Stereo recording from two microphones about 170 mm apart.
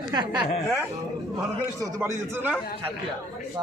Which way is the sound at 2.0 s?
10° right (ahead or behind).